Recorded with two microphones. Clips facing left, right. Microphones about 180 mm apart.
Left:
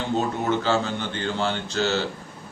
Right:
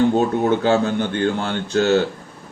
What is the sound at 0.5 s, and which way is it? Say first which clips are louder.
Speech: right 6 dB; 55° right (ahead or behind).